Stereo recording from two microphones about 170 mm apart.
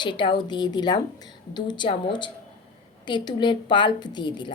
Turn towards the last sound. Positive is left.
turn(degrees=25)  # may be behind; listen again after turning